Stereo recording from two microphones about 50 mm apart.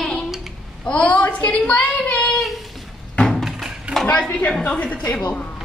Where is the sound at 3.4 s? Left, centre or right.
Centre.